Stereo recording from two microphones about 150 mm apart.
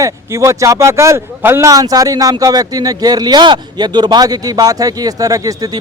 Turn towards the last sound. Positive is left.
turn(degrees=-25)  # may be behind; listen again after turning